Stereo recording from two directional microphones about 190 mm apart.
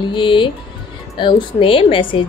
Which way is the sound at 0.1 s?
25° left (ahead or behind).